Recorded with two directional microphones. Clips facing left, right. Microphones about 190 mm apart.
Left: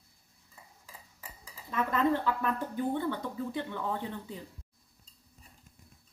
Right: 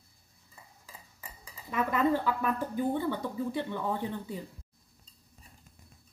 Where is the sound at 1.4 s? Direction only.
10° right (ahead or behind).